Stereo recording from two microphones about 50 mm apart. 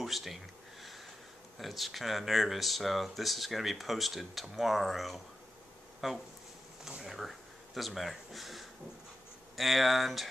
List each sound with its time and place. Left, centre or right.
0.0 s speech: centre
1.6 s speech: centre